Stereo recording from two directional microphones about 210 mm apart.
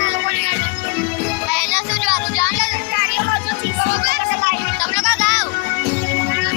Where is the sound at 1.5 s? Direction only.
Centre (ahead or behind).